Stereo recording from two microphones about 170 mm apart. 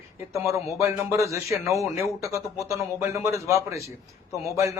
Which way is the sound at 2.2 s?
15° right (ahead or behind).